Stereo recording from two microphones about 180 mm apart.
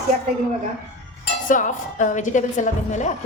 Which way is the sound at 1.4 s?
45° left (ahead or behind).